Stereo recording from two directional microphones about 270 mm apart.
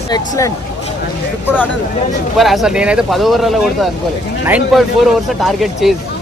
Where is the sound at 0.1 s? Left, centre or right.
Centre.